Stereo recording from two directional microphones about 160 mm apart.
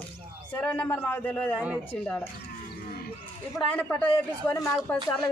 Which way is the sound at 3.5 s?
10° left (ahead or behind).